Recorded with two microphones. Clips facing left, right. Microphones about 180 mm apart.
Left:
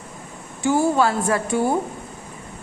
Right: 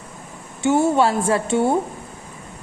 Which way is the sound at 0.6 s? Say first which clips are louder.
Right 2 dB; 25° right (ahead or behind).